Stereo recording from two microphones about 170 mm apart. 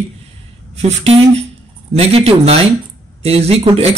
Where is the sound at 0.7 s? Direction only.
40° right (ahead or behind).